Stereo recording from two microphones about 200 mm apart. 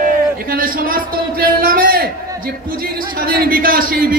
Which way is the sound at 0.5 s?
45° right (ahead or behind).